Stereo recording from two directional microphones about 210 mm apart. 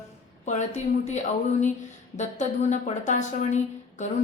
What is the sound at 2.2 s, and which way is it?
A woman's voice, 35° left (ahead or behind).